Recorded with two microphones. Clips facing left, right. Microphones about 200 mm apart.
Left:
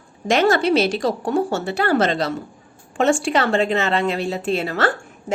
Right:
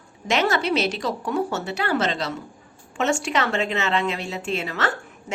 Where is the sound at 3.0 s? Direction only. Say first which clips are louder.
Left 5 dB; 30° left (ahead or behind).